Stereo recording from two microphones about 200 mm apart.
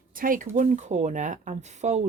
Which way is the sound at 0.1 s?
45° right (ahead or behind).